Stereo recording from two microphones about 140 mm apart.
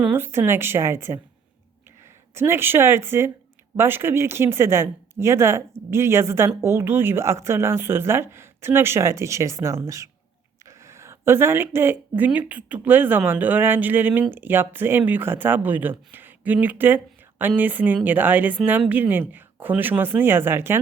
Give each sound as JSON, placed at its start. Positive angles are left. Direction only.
{"t": 0.0, "sound": "speech", "side_deg": -15}
{"t": 2.3, "sound": "speech", "side_deg": -15}